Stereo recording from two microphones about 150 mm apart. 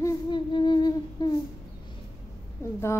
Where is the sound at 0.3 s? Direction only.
30° left (ahead or behind).